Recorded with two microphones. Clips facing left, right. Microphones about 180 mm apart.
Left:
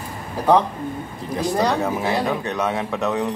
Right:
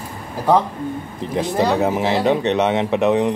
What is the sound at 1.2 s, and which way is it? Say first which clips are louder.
A man's voice: right 2 dB; 20° right (ahead or behind).